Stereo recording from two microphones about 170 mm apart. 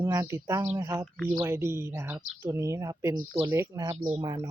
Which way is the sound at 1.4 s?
15° right (ahead or behind).